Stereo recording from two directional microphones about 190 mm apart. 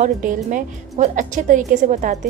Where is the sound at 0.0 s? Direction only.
45° right (ahead or behind).